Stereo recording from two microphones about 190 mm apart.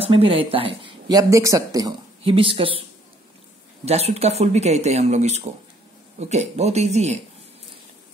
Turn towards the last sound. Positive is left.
turn(degrees=-35)  # may be behind; listen again after turning